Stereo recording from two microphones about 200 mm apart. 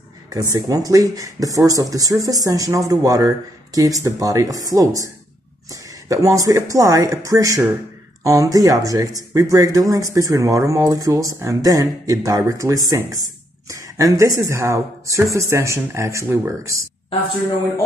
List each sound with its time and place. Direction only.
0.3 s speech: 20° right (ahead or behind)